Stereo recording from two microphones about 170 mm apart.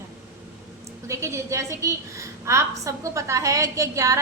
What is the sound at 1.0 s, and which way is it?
A woman's voice, 15° right (ahead or behind).